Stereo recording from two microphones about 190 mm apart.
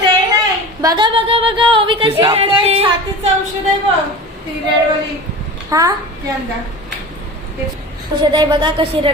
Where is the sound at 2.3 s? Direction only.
30° right (ahead or behind).